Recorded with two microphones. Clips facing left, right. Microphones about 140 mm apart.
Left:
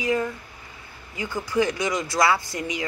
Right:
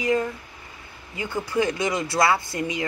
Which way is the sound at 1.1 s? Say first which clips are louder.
Left 1 dB; 25° right (ahead or behind).